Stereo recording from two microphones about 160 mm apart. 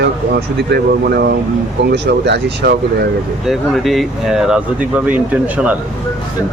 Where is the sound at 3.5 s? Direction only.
Centre (ahead or behind).